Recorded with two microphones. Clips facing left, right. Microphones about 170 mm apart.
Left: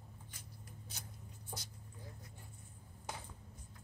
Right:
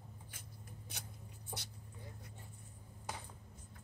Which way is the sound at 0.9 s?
65° right (ahead or behind).